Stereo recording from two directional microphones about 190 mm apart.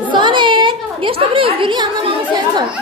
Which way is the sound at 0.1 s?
25° right (ahead or behind).